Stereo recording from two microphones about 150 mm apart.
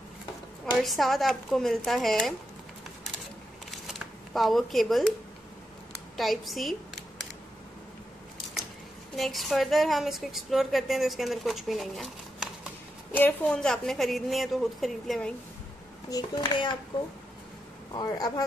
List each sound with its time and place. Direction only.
0.7 s a woman's voice: centre (ahead or behind)
3.7 s shuffling cards: centre (ahead or behind)
6.1 s a woman's voice: centre (ahead or behind)
9.1 s a woman's voice: centre (ahead or behind)
13.1 s a woman's voice: 10° left (ahead or behind)
16.1 s a child's voice: 25° left (ahead or behind)